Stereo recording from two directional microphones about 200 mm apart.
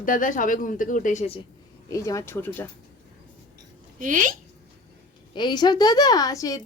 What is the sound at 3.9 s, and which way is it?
Speech, 40° right (ahead or behind).